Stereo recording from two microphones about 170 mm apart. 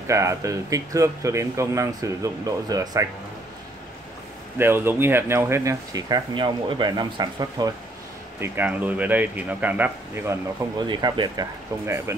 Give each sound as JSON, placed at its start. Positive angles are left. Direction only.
{"t": 0.0, "sound": "speech", "side_deg": -15}
{"t": 4.6, "sound": "speech", "side_deg": -10}
{"t": 8.4, "sound": "speech", "side_deg": -10}
{"t": 10.9, "sound": "speech", "side_deg": -25}